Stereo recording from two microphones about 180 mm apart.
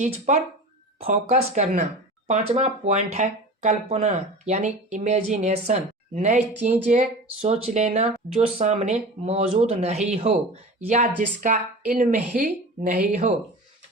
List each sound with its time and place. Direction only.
0.0 s speech: 40° right (ahead or behind)
7.4 s speech: 35° right (ahead or behind)
12.3 s speech: 50° right (ahead or behind)